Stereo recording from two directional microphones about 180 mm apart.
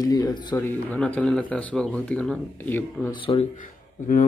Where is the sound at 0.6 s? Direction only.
10° left (ahead or behind).